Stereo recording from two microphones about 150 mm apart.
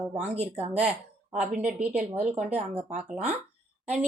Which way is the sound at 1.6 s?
10° right (ahead or behind).